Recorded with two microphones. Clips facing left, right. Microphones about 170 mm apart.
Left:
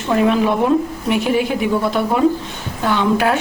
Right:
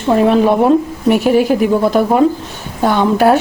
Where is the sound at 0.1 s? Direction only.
35° right (ahead or behind).